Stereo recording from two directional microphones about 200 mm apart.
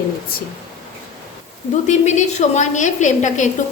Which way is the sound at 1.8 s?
35° left (ahead or behind).